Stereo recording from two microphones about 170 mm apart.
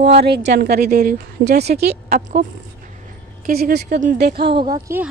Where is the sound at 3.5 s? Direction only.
60° right (ahead or behind).